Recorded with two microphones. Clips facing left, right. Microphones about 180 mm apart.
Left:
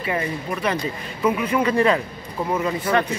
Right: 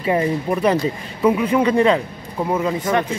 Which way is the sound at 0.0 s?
30° right (ahead or behind).